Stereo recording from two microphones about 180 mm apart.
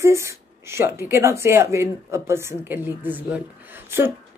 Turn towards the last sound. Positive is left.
turn(degrees=-10)  # may be behind; listen again after turning